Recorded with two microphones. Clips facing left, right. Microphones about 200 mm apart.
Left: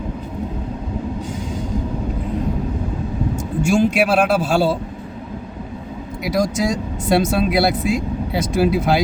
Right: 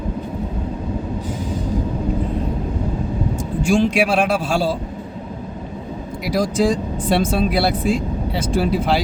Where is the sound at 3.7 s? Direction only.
Centre (ahead or behind).